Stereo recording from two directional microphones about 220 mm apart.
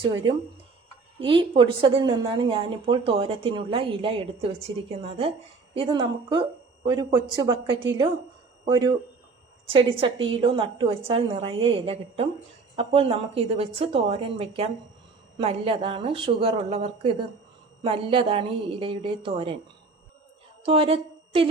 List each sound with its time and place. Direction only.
0.2 s a woman's voice: 20° right (ahead or behind)
20.7 s a woman's voice: 25° right (ahead or behind)